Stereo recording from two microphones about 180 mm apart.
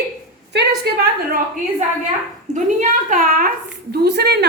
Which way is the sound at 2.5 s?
45° right (ahead or behind).